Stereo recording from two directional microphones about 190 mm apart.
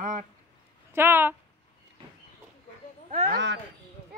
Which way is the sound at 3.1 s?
40° right (ahead or behind).